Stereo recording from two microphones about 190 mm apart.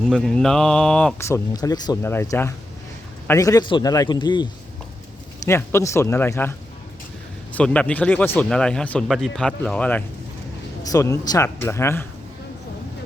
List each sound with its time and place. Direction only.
0.0 s a man's voice: centre (ahead or behind); by 4.4 s 25° left (ahead or behind)
5.5 s speech: 15° left (ahead or behind)
7.5 s speech: 5° left (ahead or behind)
10.8 s speech: 15° left (ahead or behind)